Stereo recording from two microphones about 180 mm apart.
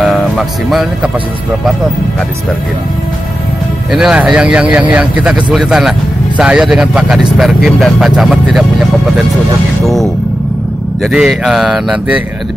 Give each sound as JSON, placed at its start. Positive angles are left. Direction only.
{"t": 0.0, "sound": "speech", "side_deg": 0}
{"t": 3.9, "sound": "speech", "side_deg": -5}
{"t": 11.0, "sound": "speech", "side_deg": -5}